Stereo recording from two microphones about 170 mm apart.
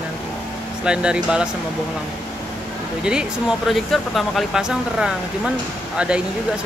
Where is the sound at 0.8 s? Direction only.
5° right (ahead or behind).